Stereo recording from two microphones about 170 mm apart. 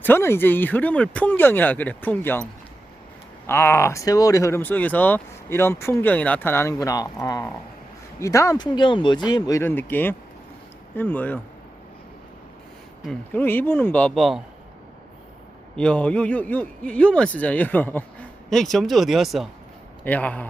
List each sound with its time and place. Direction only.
0.0 s speech: 15° left (ahead or behind)
3.4 s speech: 15° left (ahead or behind)
13.1 s speech: 10° left (ahead or behind)
15.7 s speech: 5° left (ahead or behind)